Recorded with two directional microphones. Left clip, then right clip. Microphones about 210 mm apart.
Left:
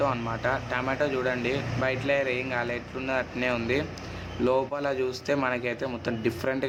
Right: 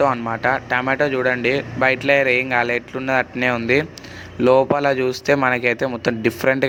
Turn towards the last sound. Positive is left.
turn(degrees=-35)  # may be behind; listen again after turning